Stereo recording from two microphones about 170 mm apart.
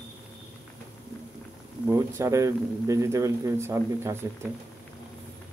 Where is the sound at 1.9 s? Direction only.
15° right (ahead or behind).